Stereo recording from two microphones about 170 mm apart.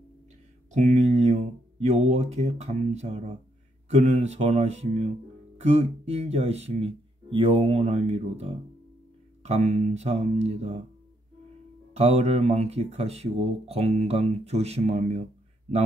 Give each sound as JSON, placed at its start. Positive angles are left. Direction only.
{"t": 0.7, "sound": "speech", "side_deg": -45}
{"t": 11.9, "sound": "speech", "side_deg": -40}